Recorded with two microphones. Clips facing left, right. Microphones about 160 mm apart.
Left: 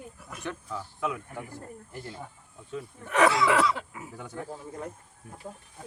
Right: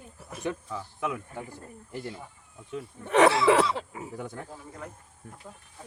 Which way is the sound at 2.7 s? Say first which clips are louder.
Right 5 dB; 25° right (ahead or behind).